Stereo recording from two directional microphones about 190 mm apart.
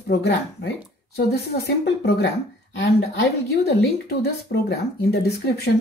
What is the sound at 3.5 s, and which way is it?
Speech, 60° left (ahead or behind).